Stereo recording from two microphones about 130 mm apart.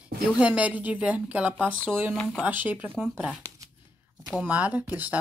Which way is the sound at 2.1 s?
5° left (ahead or behind).